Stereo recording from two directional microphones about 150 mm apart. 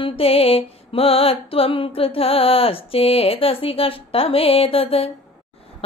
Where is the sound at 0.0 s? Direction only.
40° left (ahead or behind).